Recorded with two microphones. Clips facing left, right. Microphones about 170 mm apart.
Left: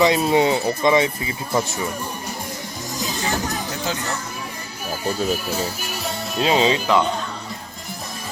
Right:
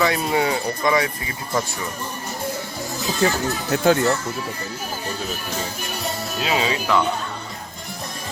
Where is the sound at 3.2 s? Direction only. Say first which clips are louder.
Right 6 dB; 55° right (ahead or behind).